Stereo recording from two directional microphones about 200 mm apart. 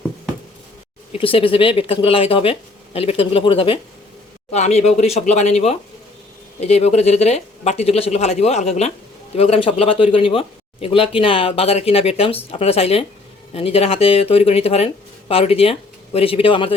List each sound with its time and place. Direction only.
1.1 s speech: 25° left (ahead or behind)